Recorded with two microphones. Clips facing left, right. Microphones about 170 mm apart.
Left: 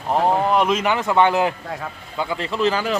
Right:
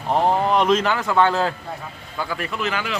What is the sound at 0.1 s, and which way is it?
Speech, 5° left (ahead or behind).